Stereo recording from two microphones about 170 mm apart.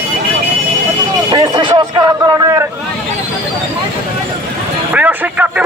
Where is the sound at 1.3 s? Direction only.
25° right (ahead or behind).